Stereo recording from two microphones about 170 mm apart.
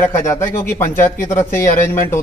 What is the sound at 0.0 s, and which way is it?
A man's voice, 15° left (ahead or behind).